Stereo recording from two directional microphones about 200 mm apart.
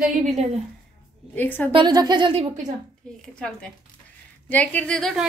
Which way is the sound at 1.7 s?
20° right (ahead or behind).